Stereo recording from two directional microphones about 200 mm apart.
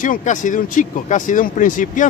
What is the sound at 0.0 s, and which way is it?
Speech, 40° left (ahead or behind).